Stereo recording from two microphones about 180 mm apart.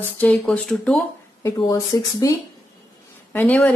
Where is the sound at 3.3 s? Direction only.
10° left (ahead or behind).